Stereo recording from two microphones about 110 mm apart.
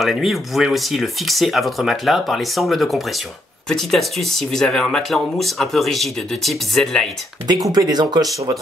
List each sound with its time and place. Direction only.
0.0 s speech: centre (ahead or behind)
7.4 s speech: 40° right (ahead or behind)